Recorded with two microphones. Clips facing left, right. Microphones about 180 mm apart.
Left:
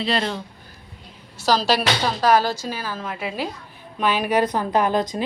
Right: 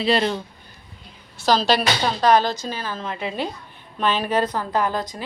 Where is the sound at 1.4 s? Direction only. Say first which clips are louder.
Right 1 dB; 5° left (ahead or behind).